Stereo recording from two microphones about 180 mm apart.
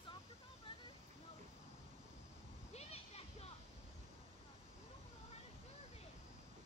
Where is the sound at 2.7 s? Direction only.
35° left (ahead or behind).